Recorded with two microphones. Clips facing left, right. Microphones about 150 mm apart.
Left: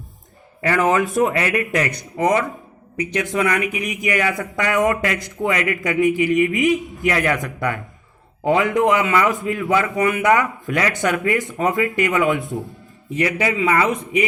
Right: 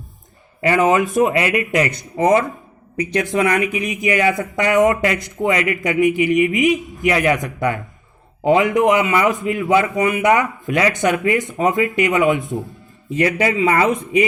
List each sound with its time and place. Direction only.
0.6 s speech: 20° right (ahead or behind)
13.1 s speech: 35° right (ahead or behind)